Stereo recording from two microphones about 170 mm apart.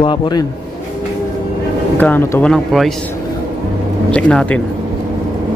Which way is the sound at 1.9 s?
10° left (ahead or behind).